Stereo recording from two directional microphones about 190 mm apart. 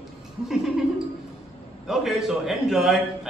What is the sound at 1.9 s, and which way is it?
A man's voice, 5° right (ahead or behind).